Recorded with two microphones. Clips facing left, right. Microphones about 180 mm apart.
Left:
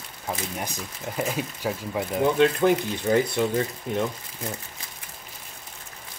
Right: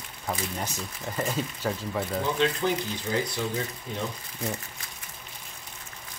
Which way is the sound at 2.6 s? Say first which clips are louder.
Left 7 dB; 55° left (ahead or behind).